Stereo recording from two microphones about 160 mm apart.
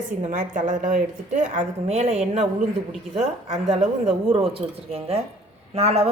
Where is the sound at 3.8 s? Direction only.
40° right (ahead or behind).